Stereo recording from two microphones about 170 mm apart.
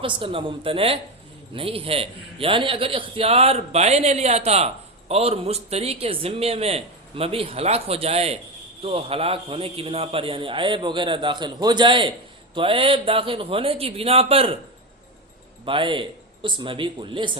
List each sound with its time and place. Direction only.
0.2 s a man's voice: 30° right (ahead or behind)
15.6 s a man's voice: 30° right (ahead or behind)